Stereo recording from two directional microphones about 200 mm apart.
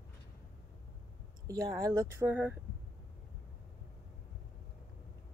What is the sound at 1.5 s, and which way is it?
Speech, 15° right (ahead or behind).